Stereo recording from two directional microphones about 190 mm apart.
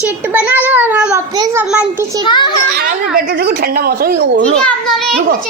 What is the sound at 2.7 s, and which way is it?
Speech, 55° right (ahead or behind).